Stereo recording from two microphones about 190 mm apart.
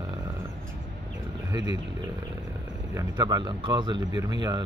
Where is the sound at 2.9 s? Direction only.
20° right (ahead or behind).